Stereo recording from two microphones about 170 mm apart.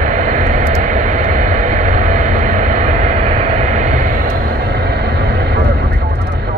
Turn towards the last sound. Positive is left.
turn(degrees=-70)  # may be behind; listen again after turning